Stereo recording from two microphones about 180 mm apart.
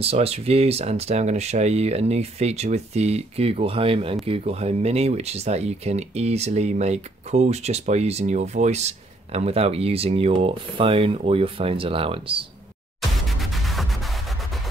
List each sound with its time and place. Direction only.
0.0 s speech: 35° right (ahead or behind)
13.4 s music: centre (ahead or behind)